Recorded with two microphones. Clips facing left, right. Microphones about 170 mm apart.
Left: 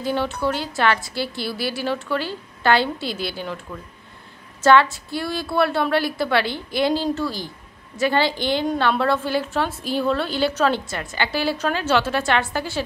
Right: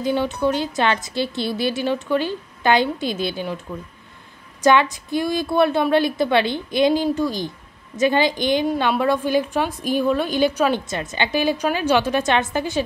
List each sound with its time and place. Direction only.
0.0 s a woman's voice: 15° right (ahead or behind)
4.6 s a woman's voice: 15° right (ahead or behind)